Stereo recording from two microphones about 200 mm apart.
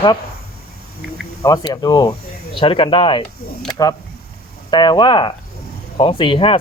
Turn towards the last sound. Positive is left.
turn(degrees=25)  # may be behind; listen again after turning